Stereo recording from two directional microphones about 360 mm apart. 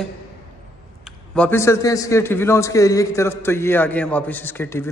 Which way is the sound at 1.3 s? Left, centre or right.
Centre.